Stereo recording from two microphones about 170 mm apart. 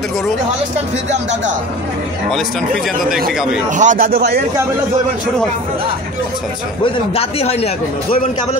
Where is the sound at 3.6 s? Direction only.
45° right (ahead or behind); by 4.4 s 65° right (ahead or behind).